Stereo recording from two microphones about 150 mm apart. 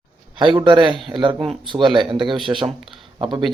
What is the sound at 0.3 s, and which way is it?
Speech, 30° right (ahead or behind).